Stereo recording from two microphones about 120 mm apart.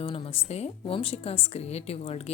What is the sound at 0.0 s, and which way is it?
A woman's voice, 50° left (ahead or behind).